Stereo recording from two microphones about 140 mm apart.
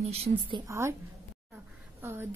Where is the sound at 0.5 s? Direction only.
20° right (ahead or behind).